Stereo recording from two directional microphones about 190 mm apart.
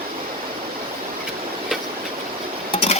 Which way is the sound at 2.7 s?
30° left (ahead or behind).